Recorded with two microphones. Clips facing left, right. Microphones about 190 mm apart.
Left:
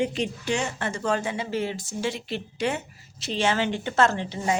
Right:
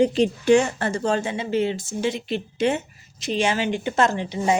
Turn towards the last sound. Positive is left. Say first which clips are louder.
# right 4 dB
turn(degrees=-20)  # may be behind; listen again after turning